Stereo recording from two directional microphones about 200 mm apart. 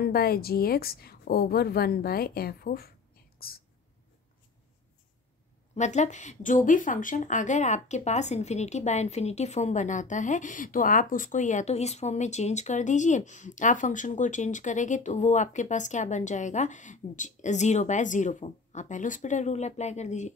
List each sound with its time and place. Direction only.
0.0 s a woman's voice: 50° left (ahead or behind)
3.3 s whispering: 50° left (ahead or behind)
5.8 s speech: 35° left (ahead or behind)